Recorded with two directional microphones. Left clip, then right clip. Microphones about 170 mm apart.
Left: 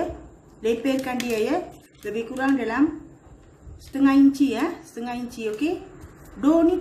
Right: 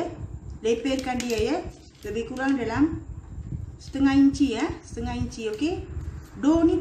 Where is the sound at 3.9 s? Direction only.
20° left (ahead or behind).